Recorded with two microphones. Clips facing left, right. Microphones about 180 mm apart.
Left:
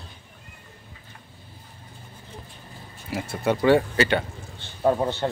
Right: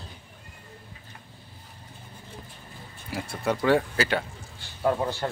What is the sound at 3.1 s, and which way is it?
Speech, centre (ahead or behind).